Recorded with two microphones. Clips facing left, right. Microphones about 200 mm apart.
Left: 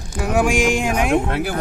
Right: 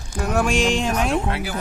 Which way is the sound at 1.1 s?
55° left (ahead or behind).